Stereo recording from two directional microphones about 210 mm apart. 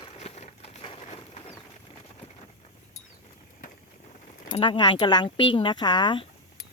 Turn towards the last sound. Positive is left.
turn(degrees=20)  # may be behind; listen again after turning